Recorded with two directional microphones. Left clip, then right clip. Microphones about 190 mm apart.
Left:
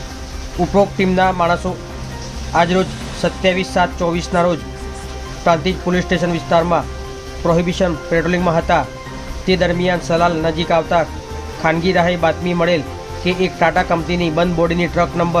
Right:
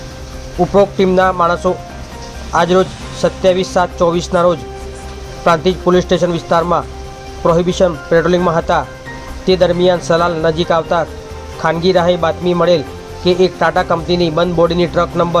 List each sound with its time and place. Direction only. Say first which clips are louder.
0.7 s speech: right 4 dB; 15° right (ahead or behind)